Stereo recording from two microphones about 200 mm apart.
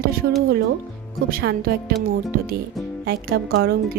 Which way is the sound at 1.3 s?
50° right (ahead or behind).